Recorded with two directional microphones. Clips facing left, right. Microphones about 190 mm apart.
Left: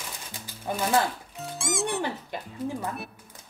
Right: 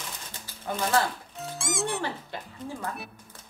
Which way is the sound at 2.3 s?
15° left (ahead or behind).